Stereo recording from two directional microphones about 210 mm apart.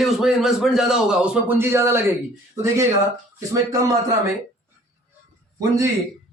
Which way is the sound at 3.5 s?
15° right (ahead or behind).